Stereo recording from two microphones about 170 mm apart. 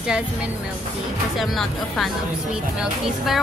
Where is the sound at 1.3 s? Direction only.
Centre (ahead or behind).